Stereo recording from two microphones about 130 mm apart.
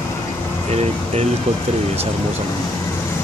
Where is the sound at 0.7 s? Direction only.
55° right (ahead or behind).